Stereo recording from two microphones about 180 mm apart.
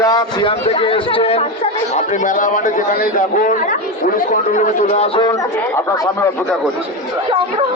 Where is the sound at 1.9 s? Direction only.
45° left (ahead or behind).